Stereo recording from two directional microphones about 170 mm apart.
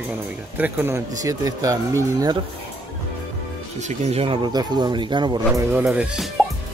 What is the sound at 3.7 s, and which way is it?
Speech, 40° right (ahead or behind).